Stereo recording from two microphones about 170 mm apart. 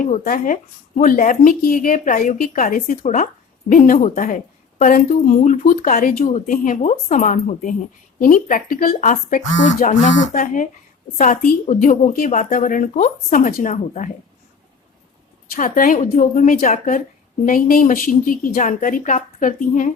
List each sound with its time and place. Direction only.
0.3 s speech: 50° left (ahead or behind)
15.5 s speech: 50° left (ahead or behind)